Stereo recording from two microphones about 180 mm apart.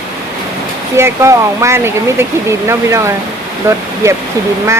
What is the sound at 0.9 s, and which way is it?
Speech, 15° right (ahead or behind).